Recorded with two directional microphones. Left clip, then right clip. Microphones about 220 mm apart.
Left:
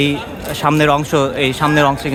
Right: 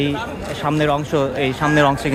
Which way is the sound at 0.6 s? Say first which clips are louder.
Left 6 dB; 25° left (ahead or behind).